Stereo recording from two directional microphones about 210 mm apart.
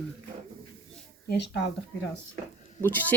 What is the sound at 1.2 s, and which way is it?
Speech, 55° left (ahead or behind).